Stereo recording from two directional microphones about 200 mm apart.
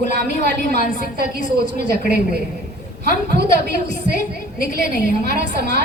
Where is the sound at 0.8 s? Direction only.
40° left (ahead or behind).